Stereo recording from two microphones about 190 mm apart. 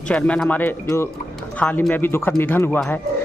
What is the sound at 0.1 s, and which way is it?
A man's voice, 5° left (ahead or behind).